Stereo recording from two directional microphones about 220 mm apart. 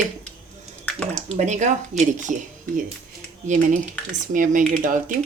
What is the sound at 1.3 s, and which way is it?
A woman's voice, 30° right (ahead or behind).